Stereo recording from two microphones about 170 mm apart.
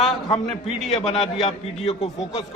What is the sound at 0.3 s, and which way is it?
A man's voice, 35° left (ahead or behind).